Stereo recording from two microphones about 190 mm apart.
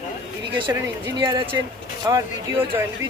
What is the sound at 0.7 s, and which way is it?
Speech, 20° right (ahead or behind).